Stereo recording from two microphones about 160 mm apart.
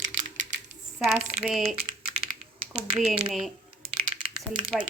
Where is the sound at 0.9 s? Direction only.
Centre (ahead or behind).